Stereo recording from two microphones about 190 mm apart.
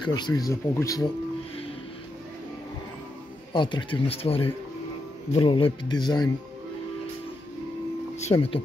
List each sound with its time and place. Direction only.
0.0 s speech: 20° left (ahead or behind)
3.5 s speech: 25° left (ahead or behind)
8.2 s speech: 35° left (ahead or behind)